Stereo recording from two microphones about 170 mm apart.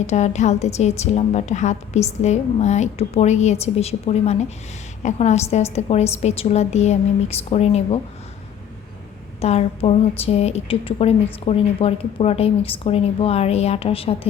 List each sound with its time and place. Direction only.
0.1 s a woman's voice: 40° left (ahead or behind)
9.4 s a woman's voice: 40° left (ahead or behind)